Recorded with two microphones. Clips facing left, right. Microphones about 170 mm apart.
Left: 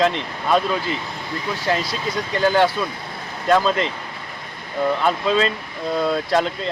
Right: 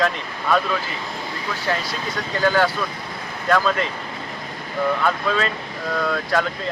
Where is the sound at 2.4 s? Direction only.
25° left (ahead or behind).